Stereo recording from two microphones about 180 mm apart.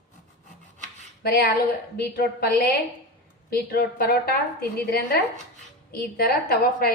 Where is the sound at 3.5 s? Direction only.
60° left (ahead or behind).